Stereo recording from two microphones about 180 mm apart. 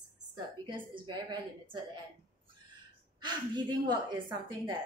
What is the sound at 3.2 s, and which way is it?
A woman's voice, 25° right (ahead or behind).